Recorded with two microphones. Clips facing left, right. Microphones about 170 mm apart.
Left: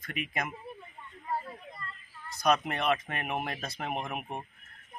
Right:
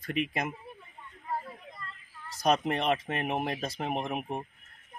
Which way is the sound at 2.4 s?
30° right (ahead or behind).